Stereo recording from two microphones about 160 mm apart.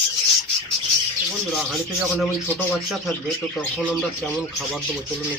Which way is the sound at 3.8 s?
5° right (ahead or behind).